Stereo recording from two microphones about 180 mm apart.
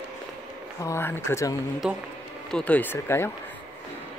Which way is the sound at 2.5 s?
5° left (ahead or behind).